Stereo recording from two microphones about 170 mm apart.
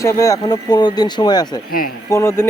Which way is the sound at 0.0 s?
20° left (ahead or behind).